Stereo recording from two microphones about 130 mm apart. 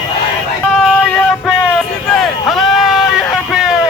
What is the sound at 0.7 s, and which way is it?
Vehicle, 5° left (ahead or behind).